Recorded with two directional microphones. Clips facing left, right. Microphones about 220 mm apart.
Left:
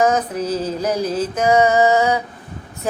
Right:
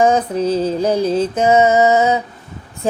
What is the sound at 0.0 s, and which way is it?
Mantra, 30° right (ahead or behind).